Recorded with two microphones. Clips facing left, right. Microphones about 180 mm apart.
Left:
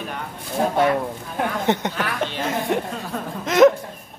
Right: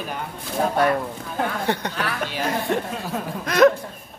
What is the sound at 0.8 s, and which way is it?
Speech, 25° left (ahead or behind).